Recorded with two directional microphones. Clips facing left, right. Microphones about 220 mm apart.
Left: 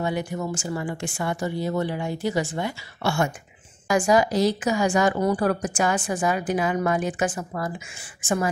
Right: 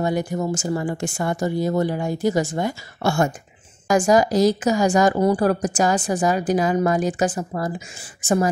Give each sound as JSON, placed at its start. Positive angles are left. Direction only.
{"t": 0.0, "sound": "a woman's voice", "side_deg": -40}